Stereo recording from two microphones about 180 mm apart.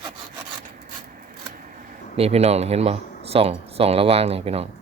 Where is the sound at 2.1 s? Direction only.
35° right (ahead or behind).